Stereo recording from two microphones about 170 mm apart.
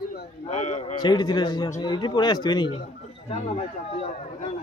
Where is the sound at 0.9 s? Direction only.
25° left (ahead or behind).